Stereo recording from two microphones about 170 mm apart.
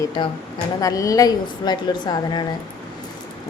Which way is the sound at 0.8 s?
20° left (ahead or behind).